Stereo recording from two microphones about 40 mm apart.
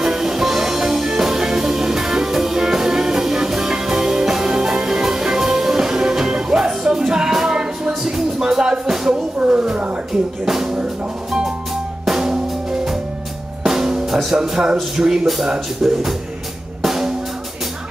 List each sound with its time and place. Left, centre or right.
0.0 s music: centre
9.1 s music: right
10.4 s music: centre
12.1 s music: centre
13.7 s music: centre
15.0 s speech: centre
16.8 s drum: centre